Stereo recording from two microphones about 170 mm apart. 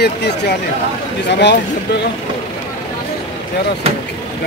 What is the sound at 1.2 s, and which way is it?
Speech, 90° left.